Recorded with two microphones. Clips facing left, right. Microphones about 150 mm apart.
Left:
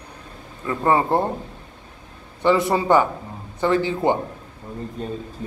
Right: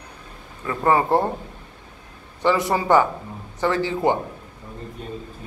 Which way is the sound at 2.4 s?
25° left (ahead or behind).